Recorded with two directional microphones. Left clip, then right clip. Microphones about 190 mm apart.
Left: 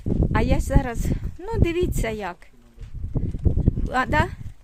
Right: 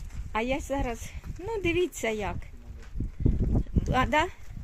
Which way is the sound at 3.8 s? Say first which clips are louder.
Left 3 dB; 15° left (ahead or behind).